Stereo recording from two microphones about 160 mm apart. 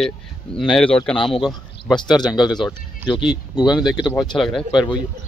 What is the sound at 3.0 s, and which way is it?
Speech, 10° right (ahead or behind).